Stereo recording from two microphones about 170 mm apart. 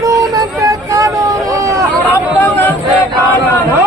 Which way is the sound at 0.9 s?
20° right (ahead or behind).